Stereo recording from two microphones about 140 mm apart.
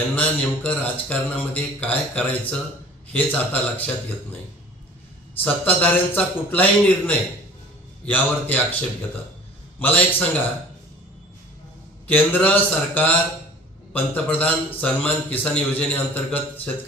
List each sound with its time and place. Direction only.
0.2 s a man's voice: 10° left (ahead or behind)
5.4 s a man's voice: 10° left (ahead or behind)
9.8 s a man's voice: 10° left (ahead or behind)
12.1 s a man's voice: 15° left (ahead or behind)